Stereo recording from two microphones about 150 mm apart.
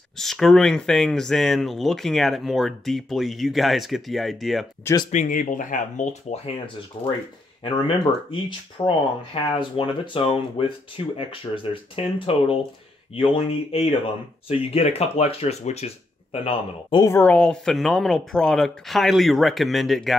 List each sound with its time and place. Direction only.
0.2 s speech: centre (ahead or behind)
5.1 s speech: 60° left (ahead or behind)
6.3 s speech: 40° left (ahead or behind)
17.0 s speech: 15° left (ahead or behind)